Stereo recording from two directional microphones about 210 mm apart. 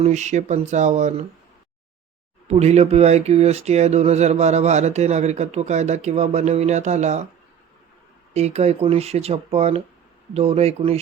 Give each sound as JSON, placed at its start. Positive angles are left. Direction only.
{"t": 0.0, "sound": "speech", "side_deg": -35}
{"t": 2.5, "sound": "speech", "side_deg": -30}
{"t": 8.3, "sound": "speech", "side_deg": -30}